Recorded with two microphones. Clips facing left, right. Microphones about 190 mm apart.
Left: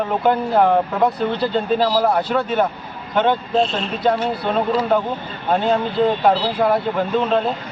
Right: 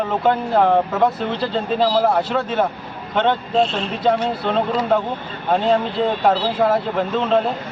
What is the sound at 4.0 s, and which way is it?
Speech, 5° left (ahead or behind).